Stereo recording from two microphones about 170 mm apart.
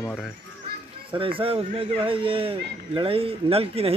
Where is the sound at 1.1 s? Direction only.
30° right (ahead or behind).